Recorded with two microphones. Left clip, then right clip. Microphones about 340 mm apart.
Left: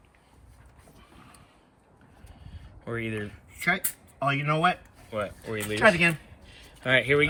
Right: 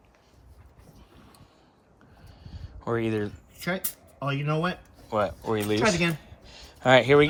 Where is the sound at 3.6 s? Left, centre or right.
Centre.